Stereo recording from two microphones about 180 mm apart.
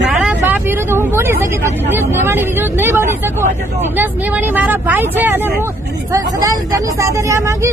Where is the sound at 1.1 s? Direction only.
15° right (ahead or behind).